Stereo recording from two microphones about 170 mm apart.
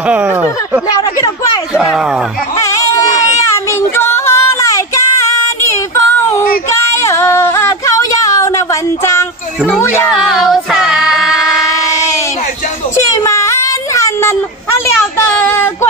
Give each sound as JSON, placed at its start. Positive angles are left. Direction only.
{"t": 0.1, "sound": "speech", "side_deg": -10}
{"t": 0.8, "sound": "speech", "side_deg": 20}
{"t": 2.6, "sound": "music", "side_deg": 20}
{"t": 3.5, "sound": "child singing", "side_deg": 15}
{"t": 6.7, "sound": "female singing", "side_deg": 15}
{"t": 9.7, "sound": "speech", "side_deg": 10}
{"t": 10.3, "sound": "female singing", "side_deg": 0}
{"t": 12.9, "sound": "a sound", "side_deg": 15}
{"t": 15.3, "sound": "a sound", "side_deg": 15}